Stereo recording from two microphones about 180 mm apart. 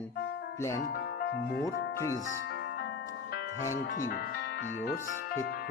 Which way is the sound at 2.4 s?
70° left (ahead or behind).